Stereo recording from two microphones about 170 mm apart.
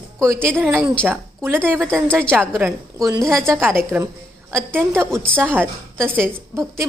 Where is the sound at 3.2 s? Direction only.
5° left (ahead or behind).